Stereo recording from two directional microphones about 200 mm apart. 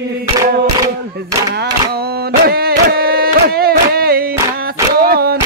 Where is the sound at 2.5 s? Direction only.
50° right (ahead or behind).